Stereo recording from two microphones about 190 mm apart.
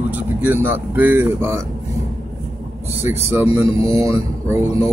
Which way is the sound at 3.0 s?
15° right (ahead or behind).